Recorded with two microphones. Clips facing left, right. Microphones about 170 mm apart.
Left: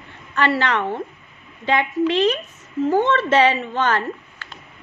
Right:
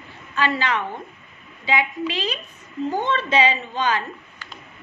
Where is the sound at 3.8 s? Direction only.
65° left (ahead or behind).